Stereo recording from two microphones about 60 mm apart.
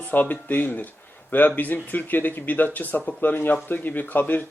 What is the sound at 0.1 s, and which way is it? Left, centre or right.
A man's voice, left.